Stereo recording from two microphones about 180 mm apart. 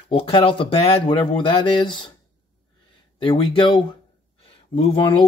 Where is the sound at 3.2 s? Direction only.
30° left (ahead or behind).